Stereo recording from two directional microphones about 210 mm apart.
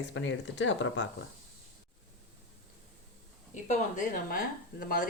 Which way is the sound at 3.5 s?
35° left (ahead or behind).